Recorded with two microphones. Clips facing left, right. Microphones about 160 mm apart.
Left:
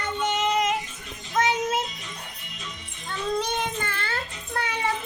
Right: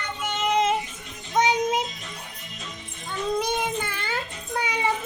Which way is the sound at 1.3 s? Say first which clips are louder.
Right 2 dB; 20° right (ahead or behind).